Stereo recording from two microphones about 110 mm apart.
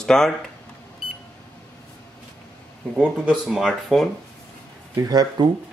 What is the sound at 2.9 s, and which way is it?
Speech, 10° right (ahead or behind).